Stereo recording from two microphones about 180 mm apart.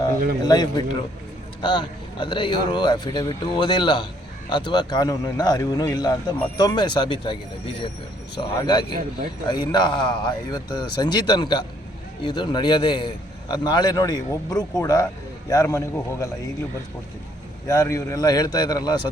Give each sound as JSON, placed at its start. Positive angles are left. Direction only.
{"t": 0.4, "sound": "a man's voice", "side_deg": 20}
{"t": 8.4, "sound": "a man's voice", "side_deg": 25}
{"t": 17.7, "sound": "a man's voice", "side_deg": 15}